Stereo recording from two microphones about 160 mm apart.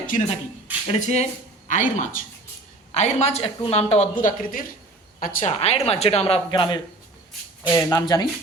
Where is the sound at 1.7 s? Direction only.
55° left (ahead or behind).